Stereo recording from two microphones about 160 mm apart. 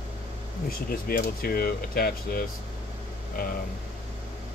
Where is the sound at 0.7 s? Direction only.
70° left (ahead or behind).